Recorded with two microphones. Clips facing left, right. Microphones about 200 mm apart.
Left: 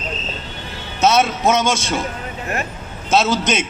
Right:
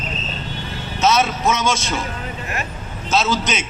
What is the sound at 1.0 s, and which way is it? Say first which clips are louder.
Speech: left 2 dB; 55° left (ahead or behind).